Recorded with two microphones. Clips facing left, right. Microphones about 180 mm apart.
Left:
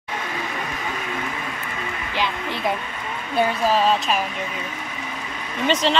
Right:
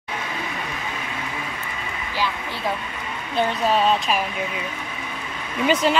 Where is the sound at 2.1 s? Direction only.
20° left (ahead or behind).